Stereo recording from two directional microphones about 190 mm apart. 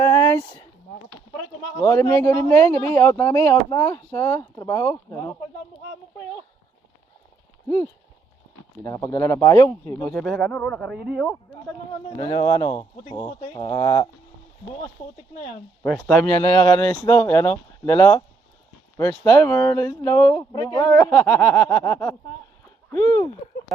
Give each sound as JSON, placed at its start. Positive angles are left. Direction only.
{"t": 0.0, "sound": "a sound", "side_deg": 15}
{"t": 1.8, "sound": "speech", "side_deg": 15}
{"t": 8.8, "sound": "speech", "side_deg": 15}
{"t": 12.1, "sound": "speech", "side_deg": 25}
{"t": 15.0, "sound": "speech", "side_deg": 30}
{"t": 15.8, "sound": "speech", "side_deg": 5}
{"t": 16.4, "sound": "speech", "side_deg": 20}